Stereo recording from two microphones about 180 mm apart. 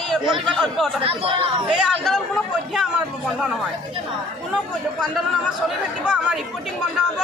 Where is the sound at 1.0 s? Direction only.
30° right (ahead or behind).